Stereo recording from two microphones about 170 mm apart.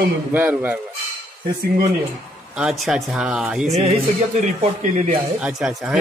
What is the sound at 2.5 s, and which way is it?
Speech, 5° right (ahead or behind).